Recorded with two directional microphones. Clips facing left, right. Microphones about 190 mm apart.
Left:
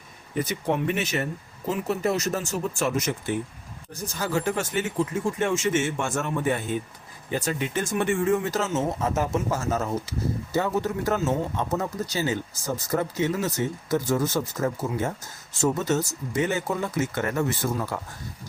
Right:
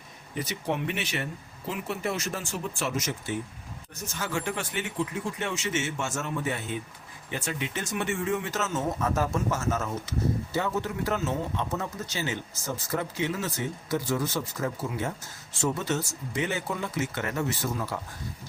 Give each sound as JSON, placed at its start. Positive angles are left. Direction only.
{"t": 0.3, "sound": "speech", "side_deg": 50}
{"t": 3.9, "sound": "speech", "side_deg": 35}
{"t": 7.3, "sound": "speech", "side_deg": 40}
{"t": 8.4, "sound": "speech", "side_deg": 35}
{"t": 9.5, "sound": "speech", "side_deg": 35}
{"t": 10.8, "sound": "speech", "side_deg": 45}